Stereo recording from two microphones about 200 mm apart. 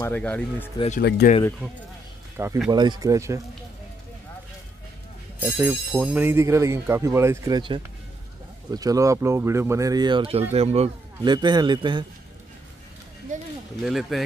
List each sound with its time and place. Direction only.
0.0 s speech: 10° left (ahead or behind)
0.7 s speech: 35° left (ahead or behind)
1.0 s speech: 55° left (ahead or behind)
2.3 s speech: 10° right (ahead or behind)
5.4 s a man's voice: 10° right (ahead or behind)
13.3 s speech: 40° right (ahead or behind)
13.8 s speech: centre (ahead or behind)